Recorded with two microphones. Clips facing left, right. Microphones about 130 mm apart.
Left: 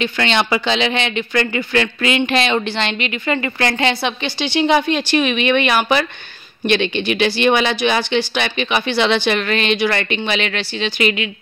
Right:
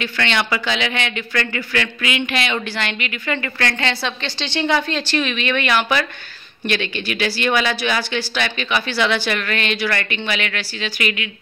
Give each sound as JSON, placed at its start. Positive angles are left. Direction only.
{"t": 0.0, "sound": "a woman's voice", "side_deg": 25}